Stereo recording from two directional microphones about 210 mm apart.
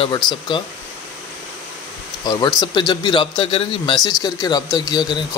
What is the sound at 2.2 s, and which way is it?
Speech, 20° left (ahead or behind).